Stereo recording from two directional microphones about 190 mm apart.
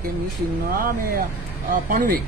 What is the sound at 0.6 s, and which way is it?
Speech, 50° right (ahead or behind).